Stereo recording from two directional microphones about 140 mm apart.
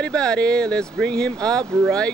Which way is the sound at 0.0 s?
5° left (ahead or behind).